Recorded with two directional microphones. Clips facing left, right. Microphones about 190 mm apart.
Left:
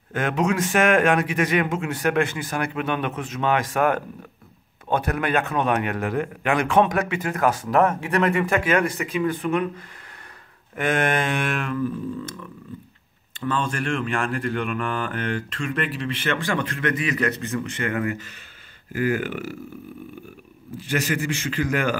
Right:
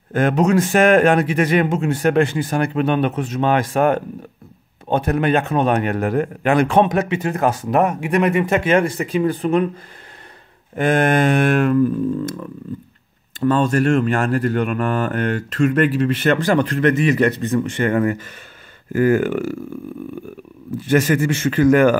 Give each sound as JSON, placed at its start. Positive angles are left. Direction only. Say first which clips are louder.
{"t": 0.1, "sound": "a man's voice", "louder": "right 7 dB", "side_deg": -35}
{"t": 10.8, "sound": "speech", "louder": "right 6 dB", "side_deg": -35}
{"t": 13.4, "sound": "speech", "louder": "right 9 dB", "side_deg": -40}
{"t": 17.8, "sound": "a man's voice", "louder": "right 7 dB", "side_deg": -40}
{"t": 20.9, "sound": "a man's voice", "louder": "right 8 dB", "side_deg": -50}